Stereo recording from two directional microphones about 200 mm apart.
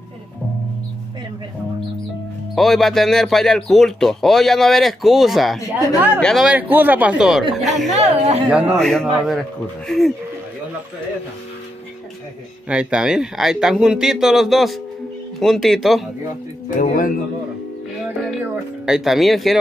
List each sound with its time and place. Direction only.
2.5 s speech: centre (ahead or behind)
8.0 s speech: 35° right (ahead or behind)
8.5 s speech: 5° right (ahead or behind)
12.6 s speech: 5° right (ahead or behind)
16.7 s speech: 40° left (ahead or behind)
18.9 s speech: centre (ahead or behind)